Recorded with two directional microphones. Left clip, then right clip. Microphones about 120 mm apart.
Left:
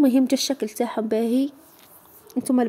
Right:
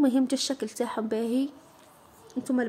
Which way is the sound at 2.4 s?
50° left (ahead or behind).